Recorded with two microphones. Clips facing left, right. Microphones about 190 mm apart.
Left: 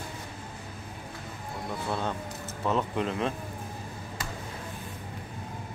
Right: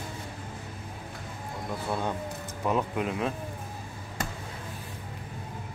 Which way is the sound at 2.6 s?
10° right (ahead or behind).